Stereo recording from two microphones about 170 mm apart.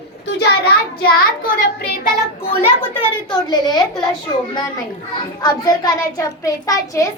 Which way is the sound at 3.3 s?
25° left (ahead or behind).